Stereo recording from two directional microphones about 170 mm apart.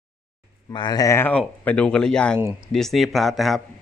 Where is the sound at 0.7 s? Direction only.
25° left (ahead or behind); by 3.6 s centre (ahead or behind).